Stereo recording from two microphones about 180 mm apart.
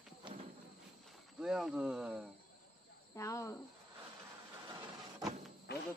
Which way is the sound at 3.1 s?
15° left (ahead or behind).